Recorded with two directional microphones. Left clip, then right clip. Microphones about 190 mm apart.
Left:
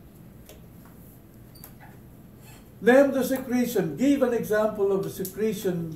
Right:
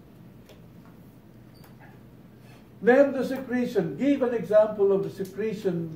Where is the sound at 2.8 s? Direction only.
45° left (ahead or behind).